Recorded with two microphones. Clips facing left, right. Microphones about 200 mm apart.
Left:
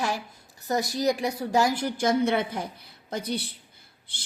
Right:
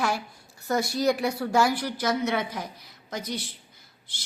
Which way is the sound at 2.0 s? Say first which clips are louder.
Left 4 dB; 30° left (ahead or behind).